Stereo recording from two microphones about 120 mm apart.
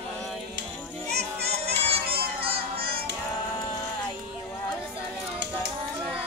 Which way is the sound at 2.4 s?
50° right (ahead or behind).